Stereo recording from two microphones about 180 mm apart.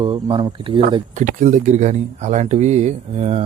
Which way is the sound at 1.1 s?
45° right (ahead or behind).